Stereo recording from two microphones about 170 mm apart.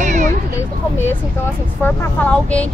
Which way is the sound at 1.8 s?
10° left (ahead or behind).